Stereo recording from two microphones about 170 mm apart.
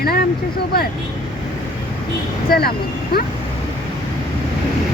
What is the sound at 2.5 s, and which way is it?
Speech, 65° left (ahead or behind).